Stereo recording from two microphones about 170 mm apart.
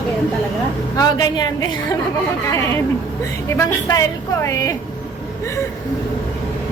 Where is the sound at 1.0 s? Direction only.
25° left (ahead or behind).